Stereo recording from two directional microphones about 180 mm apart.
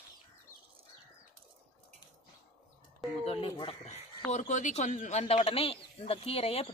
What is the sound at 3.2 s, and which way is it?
Speech, 30° left (ahead or behind).